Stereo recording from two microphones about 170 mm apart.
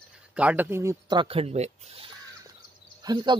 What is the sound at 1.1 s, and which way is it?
Speech, 35° right (ahead or behind).